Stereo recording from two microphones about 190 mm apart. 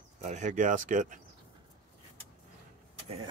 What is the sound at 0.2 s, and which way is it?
Speech, 40° right (ahead or behind).